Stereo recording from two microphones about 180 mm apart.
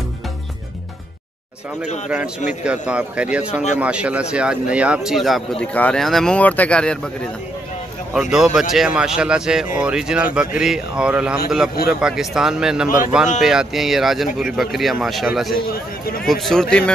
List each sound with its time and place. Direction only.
2.6 s speech: 5° right (ahead or behind)
8.1 s speech: 5° right (ahead or behind)
15.5 s speech: 55° left (ahead or behind)
16.3 s speech: centre (ahead or behind)